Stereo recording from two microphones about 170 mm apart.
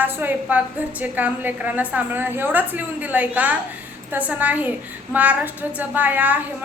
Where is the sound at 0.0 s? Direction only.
10° right (ahead or behind).